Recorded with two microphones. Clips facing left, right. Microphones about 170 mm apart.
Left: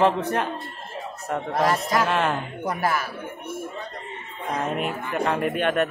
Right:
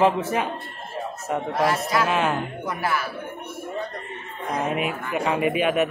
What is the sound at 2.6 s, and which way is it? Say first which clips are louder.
Speech: left 4 dB; 40° left (ahead or behind).